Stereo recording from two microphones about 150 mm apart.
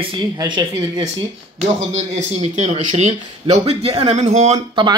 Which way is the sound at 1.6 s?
50° right (ahead or behind).